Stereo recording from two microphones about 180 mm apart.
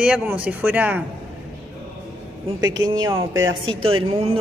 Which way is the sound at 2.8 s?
90° right.